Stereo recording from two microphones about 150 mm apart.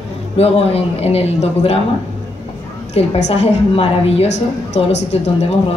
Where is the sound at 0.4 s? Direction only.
40° left (ahead or behind).